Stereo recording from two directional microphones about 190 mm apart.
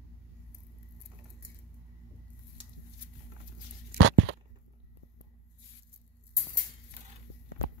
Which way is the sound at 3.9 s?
90° right.